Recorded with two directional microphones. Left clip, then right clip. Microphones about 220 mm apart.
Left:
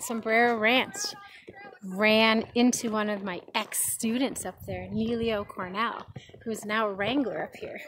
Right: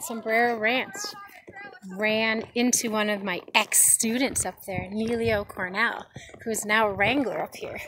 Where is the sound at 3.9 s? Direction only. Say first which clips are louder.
Right 3 dB; centre (ahead or behind).